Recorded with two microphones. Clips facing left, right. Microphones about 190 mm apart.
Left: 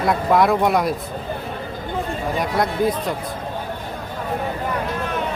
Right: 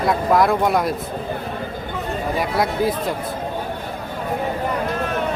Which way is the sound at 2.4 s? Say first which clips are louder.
Even; 5° right (ahead or behind).